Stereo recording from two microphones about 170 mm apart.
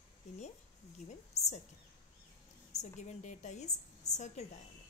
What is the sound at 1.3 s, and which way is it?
Speech, 40° left (ahead or behind).